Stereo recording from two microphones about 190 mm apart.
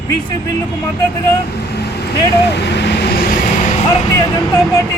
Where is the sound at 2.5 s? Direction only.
65° left (ahead or behind).